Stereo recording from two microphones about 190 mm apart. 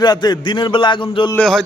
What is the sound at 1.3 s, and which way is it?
Speech, centre (ahead or behind).